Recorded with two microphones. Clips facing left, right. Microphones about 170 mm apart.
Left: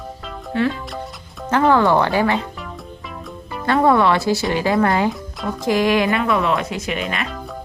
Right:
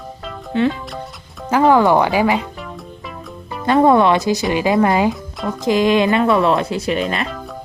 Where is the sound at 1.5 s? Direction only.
10° right (ahead or behind).